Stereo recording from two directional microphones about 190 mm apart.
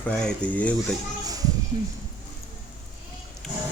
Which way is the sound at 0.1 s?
5° left (ahead or behind).